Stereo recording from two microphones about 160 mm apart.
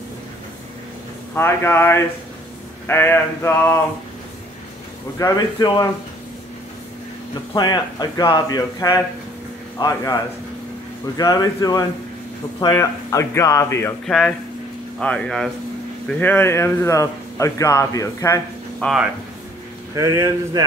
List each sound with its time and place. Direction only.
1.3 s speech: 15° left (ahead or behind)
5.2 s a man's voice: 20° left (ahead or behind)
7.5 s a man's voice: 25° left (ahead or behind)
14.0 s a man's voice: 5° left (ahead or behind)
18.8 s speech: centre (ahead or behind)
20.0 s speech: 20° right (ahead or behind)